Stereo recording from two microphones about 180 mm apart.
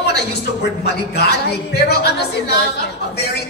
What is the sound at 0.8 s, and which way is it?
Speech, 65° left (ahead or behind).